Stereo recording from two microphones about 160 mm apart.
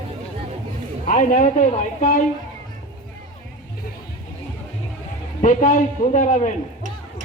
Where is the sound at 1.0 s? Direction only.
55° left (ahead or behind).